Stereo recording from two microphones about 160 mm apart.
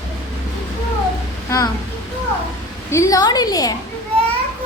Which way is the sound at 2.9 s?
20° left (ahead or behind).